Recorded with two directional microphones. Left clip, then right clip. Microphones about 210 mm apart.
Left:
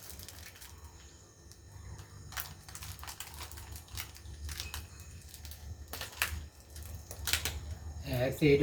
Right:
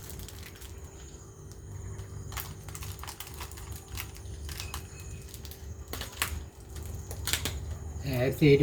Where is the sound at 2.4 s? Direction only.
Centre (ahead or behind).